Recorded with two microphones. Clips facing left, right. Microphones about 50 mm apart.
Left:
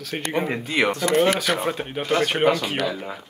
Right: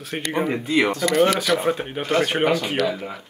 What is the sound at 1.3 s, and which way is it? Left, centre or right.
Speech, left.